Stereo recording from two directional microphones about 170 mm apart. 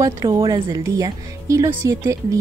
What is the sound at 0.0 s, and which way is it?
Speech, 25° right (ahead or behind).